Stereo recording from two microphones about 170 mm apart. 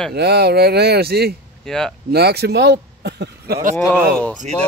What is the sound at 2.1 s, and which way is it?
Speech, 70° right (ahead or behind).